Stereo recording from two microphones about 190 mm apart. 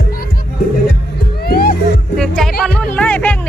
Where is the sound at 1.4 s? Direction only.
50° left (ahead or behind).